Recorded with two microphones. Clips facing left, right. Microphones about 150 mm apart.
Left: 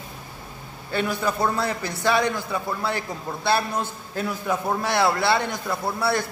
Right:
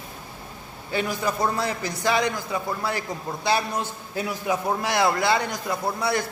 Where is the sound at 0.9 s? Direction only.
10° right (ahead or behind).